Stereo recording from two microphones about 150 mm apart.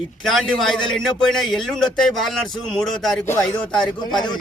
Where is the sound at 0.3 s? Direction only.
Centre (ahead or behind).